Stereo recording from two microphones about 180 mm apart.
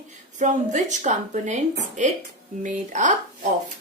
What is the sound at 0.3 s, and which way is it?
A woman's voice, 40° right (ahead or behind).